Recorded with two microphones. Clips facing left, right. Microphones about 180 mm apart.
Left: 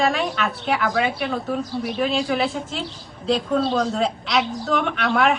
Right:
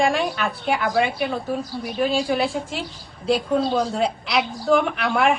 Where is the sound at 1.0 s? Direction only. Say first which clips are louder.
Right 1 dB; 5° right (ahead or behind).